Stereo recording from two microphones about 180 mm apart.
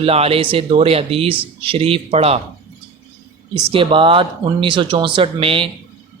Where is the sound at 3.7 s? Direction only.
30° right (ahead or behind).